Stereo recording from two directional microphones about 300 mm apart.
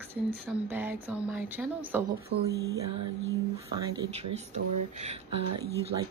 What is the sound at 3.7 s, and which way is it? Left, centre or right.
Speech, centre.